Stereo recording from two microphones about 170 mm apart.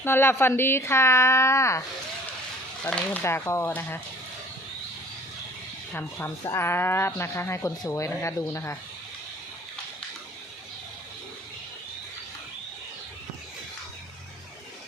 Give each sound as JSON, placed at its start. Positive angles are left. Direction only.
{"t": 0.0, "sound": "speech", "side_deg": 15}
{"t": 2.8, "sound": "speech", "side_deg": 10}
{"t": 5.9, "sound": "speech", "side_deg": 10}